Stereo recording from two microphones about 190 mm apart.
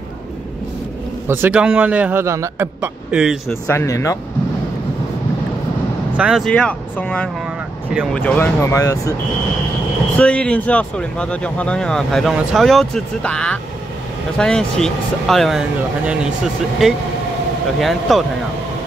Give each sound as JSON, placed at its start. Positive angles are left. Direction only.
{"t": 1.2, "sound": "a man's voice", "side_deg": -10}
{"t": 3.6, "sound": "speech", "side_deg": 15}
{"t": 6.1, "sound": "speech", "side_deg": -5}
{"t": 7.9, "sound": "speech", "side_deg": -5}
{"t": 8.2, "sound": "speech", "side_deg": 10}
{"t": 10.1, "sound": "speech", "side_deg": 5}
{"t": 16.8, "sound": "speech", "side_deg": 0}